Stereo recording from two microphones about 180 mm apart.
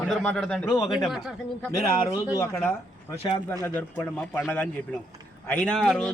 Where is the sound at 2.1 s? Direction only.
20° left (ahead or behind).